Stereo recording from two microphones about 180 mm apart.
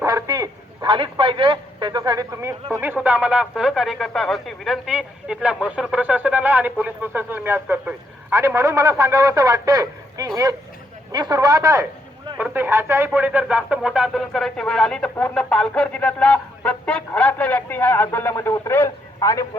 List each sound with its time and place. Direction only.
0.0 s a man's voice: 20° right (ahead or behind); by 19.5 s 15° left (ahead or behind)